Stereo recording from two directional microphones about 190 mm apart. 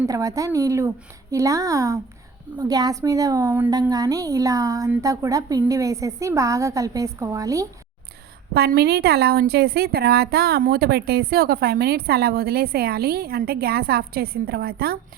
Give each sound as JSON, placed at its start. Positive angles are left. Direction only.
{"t": 0.0, "sound": "a woman's voice", "side_deg": -15}
{"t": 8.5, "sound": "a woman's voice", "side_deg": -55}